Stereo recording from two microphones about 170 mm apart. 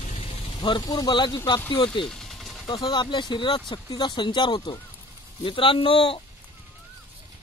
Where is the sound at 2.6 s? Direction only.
25° left (ahead or behind).